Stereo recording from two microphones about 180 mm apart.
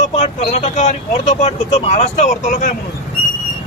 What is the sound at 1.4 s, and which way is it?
Speech, 40° left (ahead or behind).